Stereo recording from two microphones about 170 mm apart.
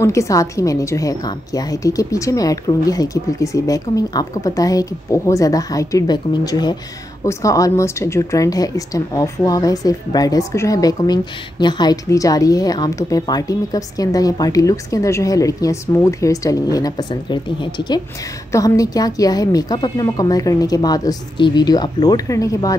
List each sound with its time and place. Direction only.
0.0 s speech: 15° left (ahead or behind)